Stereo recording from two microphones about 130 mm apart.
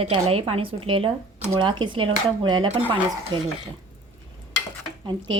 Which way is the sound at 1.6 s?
40° right (ahead or behind).